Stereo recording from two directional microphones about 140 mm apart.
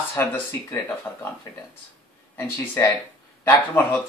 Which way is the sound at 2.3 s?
15° left (ahead or behind).